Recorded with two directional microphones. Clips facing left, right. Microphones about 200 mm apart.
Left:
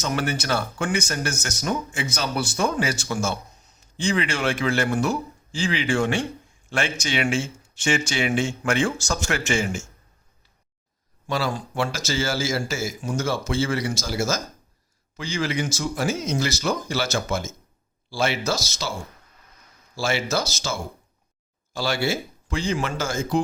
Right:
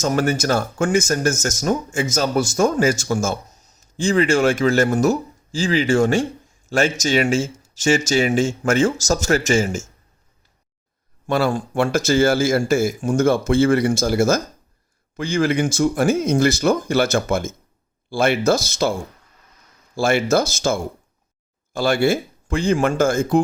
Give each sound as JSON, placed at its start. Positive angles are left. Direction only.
{"t": 0.0, "sound": "speech", "side_deg": -45}
{"t": 11.3, "sound": "speech", "side_deg": -55}
{"t": 20.0, "sound": "speech", "side_deg": -55}